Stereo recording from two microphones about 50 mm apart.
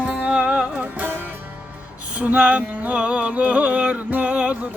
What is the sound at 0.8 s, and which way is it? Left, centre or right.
Music, right.